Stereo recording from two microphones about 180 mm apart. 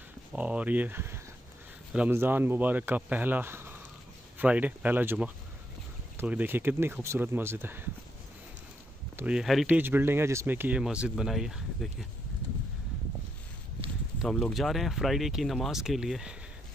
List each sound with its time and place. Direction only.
0.3 s speech: 10° right (ahead or behind)
9.1 s speech: 5° right (ahead or behind)
14.2 s speech: centre (ahead or behind)